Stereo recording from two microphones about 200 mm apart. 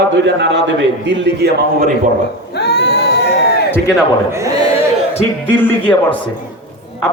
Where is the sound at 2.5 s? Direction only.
55° left (ahead or behind).